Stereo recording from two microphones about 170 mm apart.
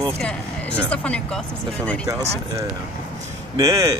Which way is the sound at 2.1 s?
15° right (ahead or behind).